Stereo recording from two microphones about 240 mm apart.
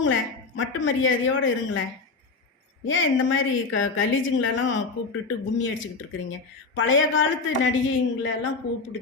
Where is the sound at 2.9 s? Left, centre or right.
Left.